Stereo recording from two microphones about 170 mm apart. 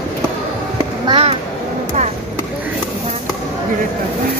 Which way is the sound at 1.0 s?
35° right (ahead or behind).